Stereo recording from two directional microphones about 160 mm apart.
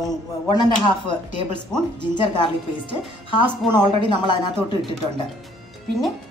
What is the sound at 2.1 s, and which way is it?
Speech, 30° left (ahead or behind).